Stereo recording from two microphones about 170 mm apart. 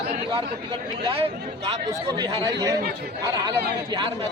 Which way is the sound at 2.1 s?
25° right (ahead or behind).